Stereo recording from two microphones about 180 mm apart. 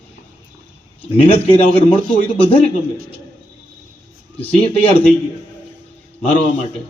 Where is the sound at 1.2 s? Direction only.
30° left (ahead or behind).